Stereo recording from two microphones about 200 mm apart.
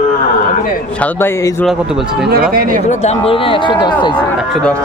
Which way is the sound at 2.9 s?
35° left (ahead or behind).